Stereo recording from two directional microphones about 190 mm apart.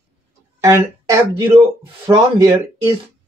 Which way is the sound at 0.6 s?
15° right (ahead or behind).